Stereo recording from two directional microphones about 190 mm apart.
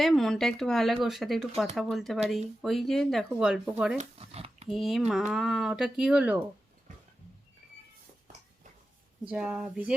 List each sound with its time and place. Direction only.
0.0 s speech: centre (ahead or behind)
3.9 s speech: 35° right (ahead or behind)
4.7 s speech: centre (ahead or behind)
9.2 s speech: 5° right (ahead or behind)